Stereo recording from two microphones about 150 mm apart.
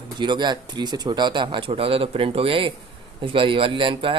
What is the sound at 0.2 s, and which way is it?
Speech, 30° right (ahead or behind).